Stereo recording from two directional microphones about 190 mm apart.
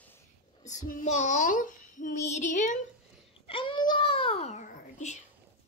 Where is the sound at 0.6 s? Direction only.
40° left (ahead or behind).